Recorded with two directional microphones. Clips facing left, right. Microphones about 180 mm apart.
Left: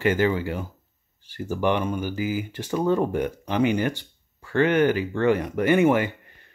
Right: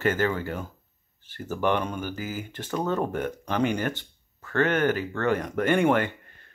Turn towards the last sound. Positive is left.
turn(degrees=10)  # may be behind; listen again after turning